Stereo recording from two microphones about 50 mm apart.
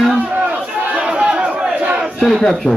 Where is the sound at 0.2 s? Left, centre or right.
Right.